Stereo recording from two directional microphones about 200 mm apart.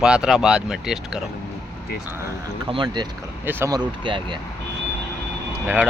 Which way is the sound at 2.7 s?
20° right (ahead or behind).